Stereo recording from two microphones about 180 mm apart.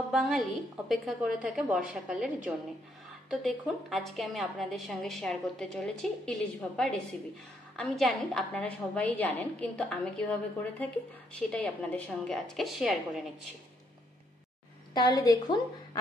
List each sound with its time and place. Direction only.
0.1 s a woman's voice: centre (ahead or behind)
7.7 s a woman's voice: 5° left (ahead or behind)
15.0 s a woman's voice: 25° left (ahead or behind)